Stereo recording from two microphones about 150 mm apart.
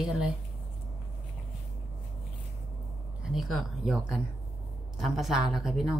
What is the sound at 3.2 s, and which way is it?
A woman's voice, centre (ahead or behind).